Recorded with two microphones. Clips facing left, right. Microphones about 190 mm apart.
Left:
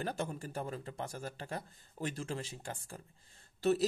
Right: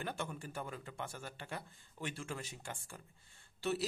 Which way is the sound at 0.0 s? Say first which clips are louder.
Left 4 dB; 35° left (ahead or behind).